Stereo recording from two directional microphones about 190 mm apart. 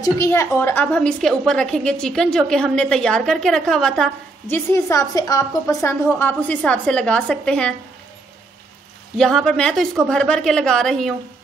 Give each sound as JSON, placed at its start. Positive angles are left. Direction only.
{"t": 0.0, "sound": "a woman's voice", "side_deg": 15}
{"t": 9.2, "sound": "a woman's voice", "side_deg": 0}